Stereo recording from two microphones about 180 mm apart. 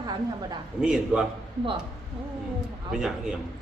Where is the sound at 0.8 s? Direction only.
5° right (ahead or behind).